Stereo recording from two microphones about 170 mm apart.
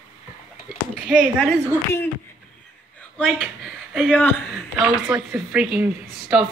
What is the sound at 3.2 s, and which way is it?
Speech, centre (ahead or behind).